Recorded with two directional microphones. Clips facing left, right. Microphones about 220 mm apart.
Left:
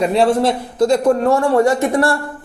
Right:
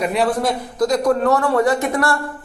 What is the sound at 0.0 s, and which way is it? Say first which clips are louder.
A man's voice: left 5 dB; 30° left (ahead or behind).